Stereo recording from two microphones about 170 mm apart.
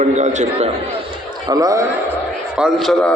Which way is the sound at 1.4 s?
20° right (ahead or behind).